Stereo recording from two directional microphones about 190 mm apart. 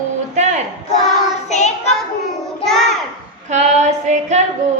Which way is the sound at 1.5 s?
35° left (ahead or behind).